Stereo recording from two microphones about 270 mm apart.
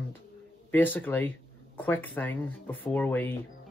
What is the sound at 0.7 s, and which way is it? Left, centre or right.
Speech, centre.